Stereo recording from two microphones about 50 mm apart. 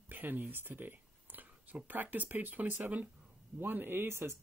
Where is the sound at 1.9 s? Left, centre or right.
Right.